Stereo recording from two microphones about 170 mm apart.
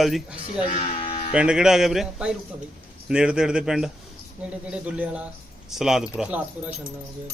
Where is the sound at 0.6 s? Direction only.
35° left (ahead or behind).